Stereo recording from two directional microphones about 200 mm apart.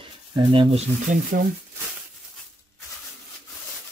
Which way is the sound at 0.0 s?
25° right (ahead or behind).